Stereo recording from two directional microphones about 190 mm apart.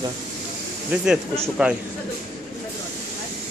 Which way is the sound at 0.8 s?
5° right (ahead or behind).